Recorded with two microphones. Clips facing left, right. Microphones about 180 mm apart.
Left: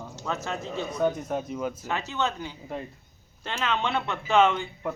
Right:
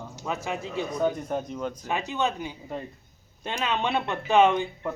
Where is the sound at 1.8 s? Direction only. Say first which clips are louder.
Right 5 dB; 15° right (ahead or behind).